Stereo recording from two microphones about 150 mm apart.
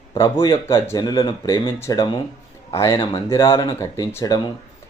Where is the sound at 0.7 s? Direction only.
25° left (ahead or behind).